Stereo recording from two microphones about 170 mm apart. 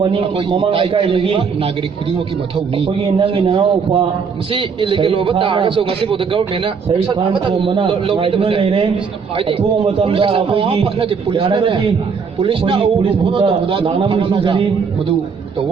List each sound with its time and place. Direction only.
0.0 s a man's voice: 30° right (ahead or behind)
2.7 s a man's voice: 30° right (ahead or behind)